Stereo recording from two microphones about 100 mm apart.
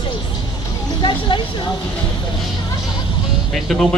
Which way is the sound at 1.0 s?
55° left (ahead or behind).